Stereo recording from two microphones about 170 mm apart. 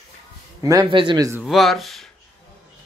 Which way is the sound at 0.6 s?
20° right (ahead or behind).